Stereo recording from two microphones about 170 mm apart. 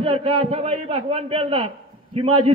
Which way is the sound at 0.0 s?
35° right (ahead or behind).